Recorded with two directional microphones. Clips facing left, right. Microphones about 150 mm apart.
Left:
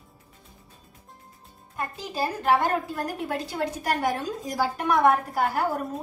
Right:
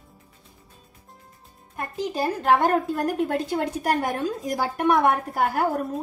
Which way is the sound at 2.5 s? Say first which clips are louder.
Right 3 dB; 50° right (ahead or behind).